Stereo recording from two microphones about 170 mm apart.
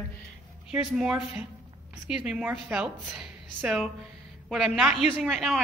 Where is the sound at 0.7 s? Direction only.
5° right (ahead or behind).